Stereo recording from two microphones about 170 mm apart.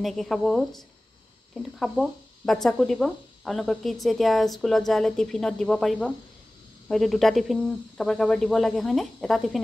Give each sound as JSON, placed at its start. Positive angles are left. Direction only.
{"t": 0.0, "sound": "speech", "side_deg": 0}